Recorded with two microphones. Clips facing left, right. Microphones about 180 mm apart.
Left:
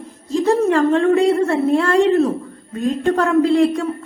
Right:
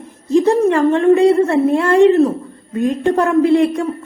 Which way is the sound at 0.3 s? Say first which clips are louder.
Right 3 dB; 15° right (ahead or behind).